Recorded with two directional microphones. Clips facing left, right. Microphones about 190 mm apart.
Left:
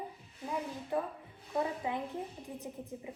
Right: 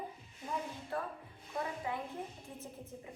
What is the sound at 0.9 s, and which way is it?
A woman's voice, 15° left (ahead or behind).